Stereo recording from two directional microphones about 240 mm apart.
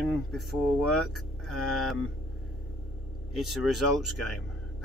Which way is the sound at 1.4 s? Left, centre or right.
Left.